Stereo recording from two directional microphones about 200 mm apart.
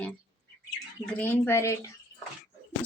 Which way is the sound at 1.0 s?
10° left (ahead or behind).